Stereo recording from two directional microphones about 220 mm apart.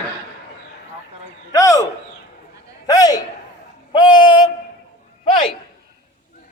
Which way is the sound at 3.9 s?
20° left (ahead or behind).